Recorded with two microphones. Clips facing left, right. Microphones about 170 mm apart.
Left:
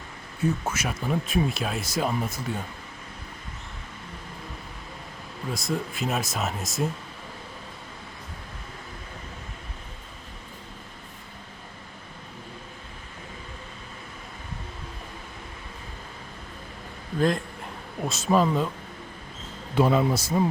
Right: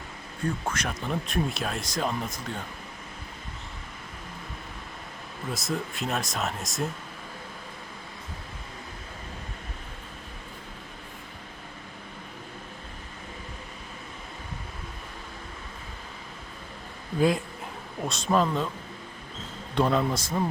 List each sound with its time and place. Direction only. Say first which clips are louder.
0.4 s speech: left 3 dB; 5° left (ahead or behind)
5.5 s speech: left 2 dB; centre (ahead or behind)
17.2 s speech: even; 5° right (ahead or behind)
19.7 s speech: left 3 dB; 5° left (ahead or behind)